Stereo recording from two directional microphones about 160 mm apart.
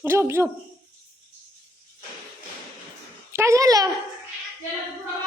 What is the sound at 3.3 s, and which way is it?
Speech, 20° right (ahead or behind).